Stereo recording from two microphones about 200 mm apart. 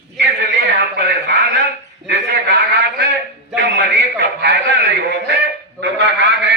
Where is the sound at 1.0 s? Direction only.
55° right (ahead or behind).